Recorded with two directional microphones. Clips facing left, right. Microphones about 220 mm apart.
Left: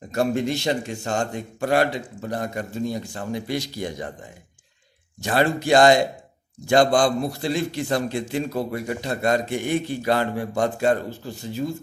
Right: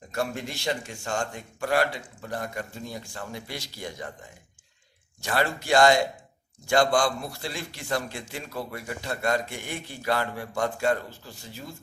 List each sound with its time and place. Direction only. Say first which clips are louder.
0.3 s a man's voice: left 8 dB; 20° left (ahead or behind)
5.2 s a man's voice: left 6 dB; 20° left (ahead or behind)
7.1 s a man's voice: left 8 dB; 45° left (ahead or behind)
7.4 s a man's voice: left 10 dB; 20° left (ahead or behind)